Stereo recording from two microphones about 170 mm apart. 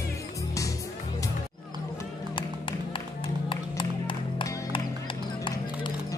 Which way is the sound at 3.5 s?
30° left (ahead or behind).